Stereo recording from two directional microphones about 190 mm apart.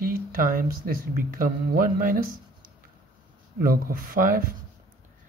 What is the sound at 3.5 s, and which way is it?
Speech, 50° right (ahead or behind).